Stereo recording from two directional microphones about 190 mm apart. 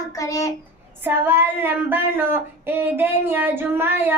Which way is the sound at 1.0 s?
10° right (ahead or behind).